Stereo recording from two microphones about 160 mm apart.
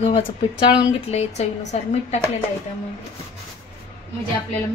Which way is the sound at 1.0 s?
45° left (ahead or behind).